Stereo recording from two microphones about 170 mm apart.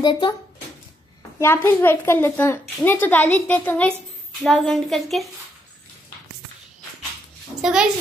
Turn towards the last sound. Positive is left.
turn(degrees=-5)  # may be behind; listen again after turning